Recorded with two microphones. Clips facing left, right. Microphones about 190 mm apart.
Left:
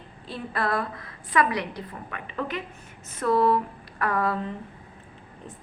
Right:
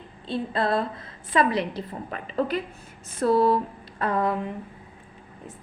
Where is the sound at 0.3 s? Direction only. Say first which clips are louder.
Right 3 dB; 25° right (ahead or behind).